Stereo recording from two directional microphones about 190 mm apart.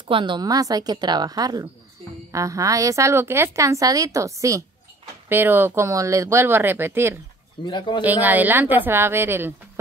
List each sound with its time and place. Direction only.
0.0 s a woman's voice: 25° right (ahead or behind)
7.6 s speech: 25° left (ahead or behind)
8.0 s a woman's voice: 10° right (ahead or behind)